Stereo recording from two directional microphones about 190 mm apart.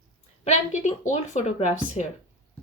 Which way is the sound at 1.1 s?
35° left (ahead or behind).